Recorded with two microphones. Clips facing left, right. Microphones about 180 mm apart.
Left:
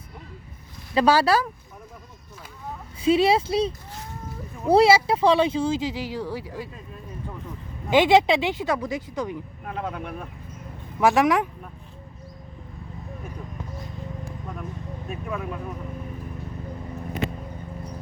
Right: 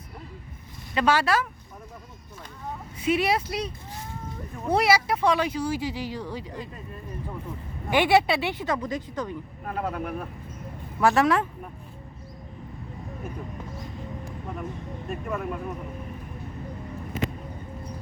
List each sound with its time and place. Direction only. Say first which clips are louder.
0.9 s speech: left 4 dB; 35° left (ahead or behind)
3.0 s speech: left 5 dB; 30° left (ahead or behind)
4.7 s speech: left 6 dB; 30° left (ahead or behind); by 6.7 s 5° left (ahead or behind)
7.9 s speech: left 3 dB; 15° left (ahead or behind)
9.6 s speech: right 2 dB; 5° right (ahead or behind)
11.0 s speech: left 2 dB; 15° left (ahead or behind)
15.1 s speech: right 1 dB; centre (ahead or behind)